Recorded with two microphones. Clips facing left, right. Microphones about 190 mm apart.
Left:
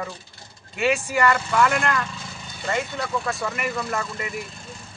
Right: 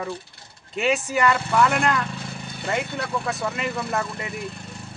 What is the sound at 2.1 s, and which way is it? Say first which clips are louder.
Vehicle: right 4 dB; 60° right (ahead or behind).